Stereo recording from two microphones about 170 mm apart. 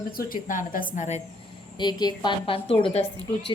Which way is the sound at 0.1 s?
55° left (ahead or behind).